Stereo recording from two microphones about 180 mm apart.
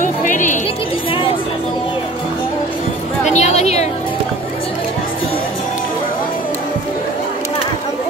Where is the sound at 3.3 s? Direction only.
40° left (ahead or behind).